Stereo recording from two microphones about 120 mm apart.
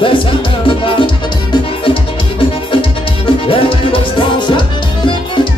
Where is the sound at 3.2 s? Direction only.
45° left (ahead or behind).